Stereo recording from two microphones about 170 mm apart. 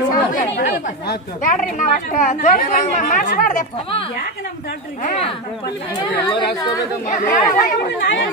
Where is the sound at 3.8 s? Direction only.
30° left (ahead or behind).